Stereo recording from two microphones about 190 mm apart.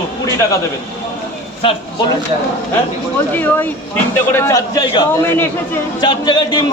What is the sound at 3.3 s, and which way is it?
A man's voice, 10° left (ahead or behind).